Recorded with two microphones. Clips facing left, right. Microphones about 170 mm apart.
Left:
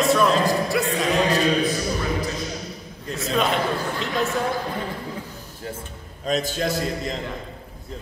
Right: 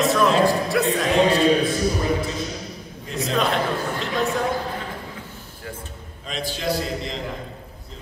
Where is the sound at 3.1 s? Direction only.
Centre (ahead or behind).